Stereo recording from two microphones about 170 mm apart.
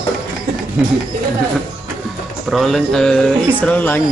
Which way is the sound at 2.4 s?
Centre (ahead or behind).